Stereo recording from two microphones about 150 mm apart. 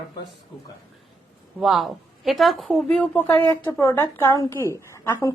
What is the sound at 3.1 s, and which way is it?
A woman's voice, 15° left (ahead or behind).